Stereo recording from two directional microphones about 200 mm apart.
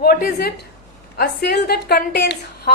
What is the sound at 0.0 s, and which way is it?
A woman's voice, 50° left (ahead or behind).